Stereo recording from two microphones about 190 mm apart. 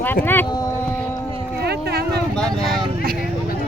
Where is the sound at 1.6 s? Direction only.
55° right (ahead or behind).